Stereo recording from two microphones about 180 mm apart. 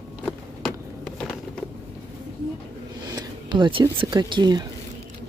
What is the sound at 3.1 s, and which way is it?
Speech, 25° right (ahead or behind).